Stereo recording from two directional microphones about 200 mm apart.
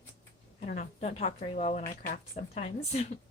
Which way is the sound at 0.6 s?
40° left (ahead or behind).